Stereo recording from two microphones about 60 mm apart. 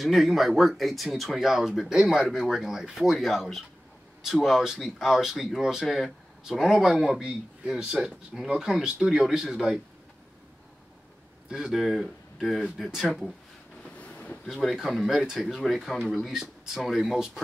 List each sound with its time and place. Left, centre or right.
0.0 s speech: centre
11.5 s speech: centre
13.8 s a sound: left
14.5 s speech: centre